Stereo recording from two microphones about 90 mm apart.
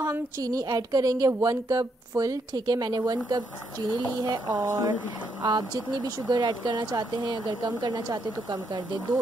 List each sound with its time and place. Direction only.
0.1 s speech: 40° right (ahead or behind)